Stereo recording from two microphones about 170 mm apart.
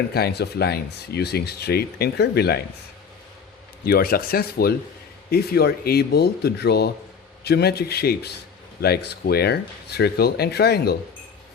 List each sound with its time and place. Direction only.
0.1 s speech: 70° left (ahead or behind)
3.8 s speech: 65° left (ahead or behind)